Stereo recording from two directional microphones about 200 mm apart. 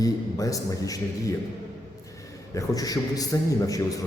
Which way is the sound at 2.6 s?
20° left (ahead or behind).